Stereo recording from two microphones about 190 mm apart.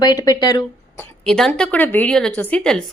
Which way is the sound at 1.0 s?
5° left (ahead or behind).